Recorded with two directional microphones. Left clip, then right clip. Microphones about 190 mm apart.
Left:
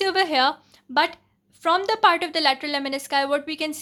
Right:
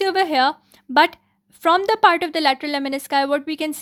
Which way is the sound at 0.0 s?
40° right (ahead or behind).